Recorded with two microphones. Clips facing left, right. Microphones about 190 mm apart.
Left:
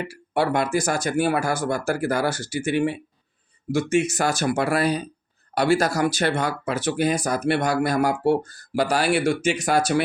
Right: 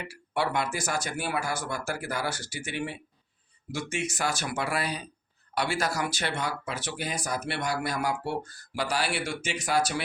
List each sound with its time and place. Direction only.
0.1 s speech: 45° left (ahead or behind)